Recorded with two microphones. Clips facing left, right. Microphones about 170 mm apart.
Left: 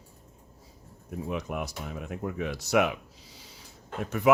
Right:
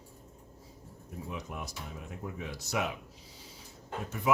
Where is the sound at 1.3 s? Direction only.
75° left (ahead or behind).